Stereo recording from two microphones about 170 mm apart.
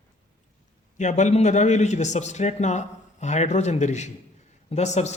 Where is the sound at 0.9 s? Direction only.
45° left (ahead or behind).